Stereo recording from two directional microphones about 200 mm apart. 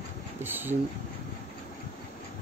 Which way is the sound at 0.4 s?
10° right (ahead or behind).